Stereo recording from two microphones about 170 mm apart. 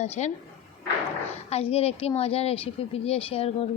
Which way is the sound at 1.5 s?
35° left (ahead or behind).